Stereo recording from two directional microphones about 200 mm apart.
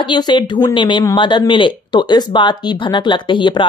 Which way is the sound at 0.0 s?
20° left (ahead or behind).